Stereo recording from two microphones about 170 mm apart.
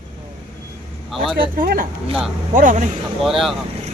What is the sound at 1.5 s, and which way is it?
A man's voice, 60° right (ahead or behind).